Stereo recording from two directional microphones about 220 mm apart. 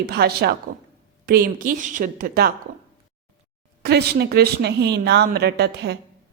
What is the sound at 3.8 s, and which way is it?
A woman's voice, 45° right (ahead or behind).